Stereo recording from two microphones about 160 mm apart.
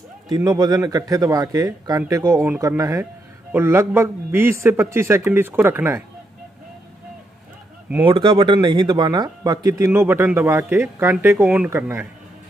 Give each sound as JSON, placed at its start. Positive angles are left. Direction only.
{"t": 0.3, "sound": "speech", "side_deg": -25}
{"t": 8.0, "sound": "speech", "side_deg": -30}